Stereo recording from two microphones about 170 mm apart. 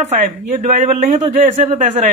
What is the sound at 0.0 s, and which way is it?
Speech, 45° right (ahead or behind).